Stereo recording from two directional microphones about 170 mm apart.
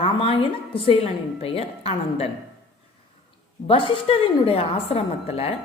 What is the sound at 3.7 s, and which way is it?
A woman's voice, 30° left (ahead or behind).